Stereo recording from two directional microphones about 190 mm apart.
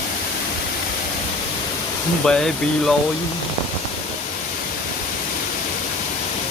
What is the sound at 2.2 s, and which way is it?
Speech, 5° left (ahead or behind).